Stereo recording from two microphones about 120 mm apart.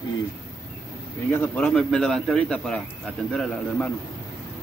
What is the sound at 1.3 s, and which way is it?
A man's voice, 15° left (ahead or behind).